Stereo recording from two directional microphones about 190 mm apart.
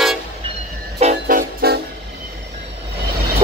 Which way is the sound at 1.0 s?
40° right (ahead or behind).